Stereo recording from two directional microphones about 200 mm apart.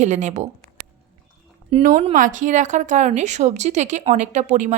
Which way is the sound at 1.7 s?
35° right (ahead or behind).